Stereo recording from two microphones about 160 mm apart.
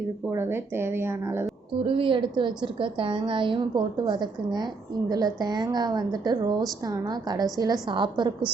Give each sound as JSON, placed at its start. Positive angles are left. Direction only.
{"t": 0.3, "sound": "speech", "side_deg": -15}
{"t": 1.8, "sound": "a woman's voice", "side_deg": -35}